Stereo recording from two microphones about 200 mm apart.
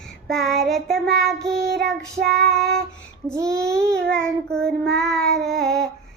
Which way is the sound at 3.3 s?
15° right (ahead or behind).